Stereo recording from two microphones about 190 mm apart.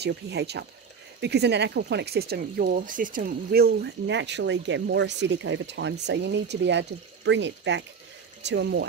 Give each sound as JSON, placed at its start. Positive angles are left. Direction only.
{"t": 0.0, "sound": "speech", "side_deg": -60}